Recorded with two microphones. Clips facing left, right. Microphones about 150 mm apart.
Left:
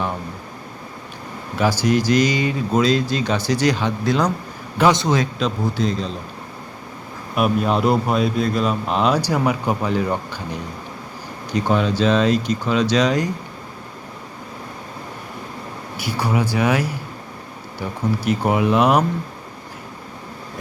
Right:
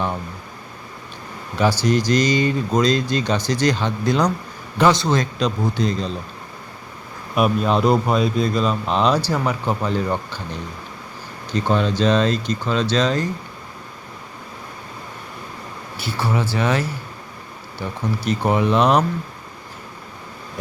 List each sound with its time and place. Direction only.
1.5 s speech: 5° left (ahead or behind)
4.9 s a man's voice: 20° left (ahead or behind)
5.1 s speech: 5° left (ahead or behind)
7.3 s speech: 5° left (ahead or behind)
16.0 s speech: 15° left (ahead or behind)
18.3 s speech: 10° left (ahead or behind)